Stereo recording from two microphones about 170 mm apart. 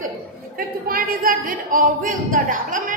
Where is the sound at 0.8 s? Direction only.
60° right (ahead or behind).